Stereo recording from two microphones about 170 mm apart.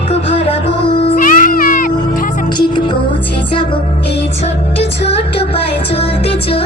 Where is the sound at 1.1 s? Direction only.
55° left (ahead or behind).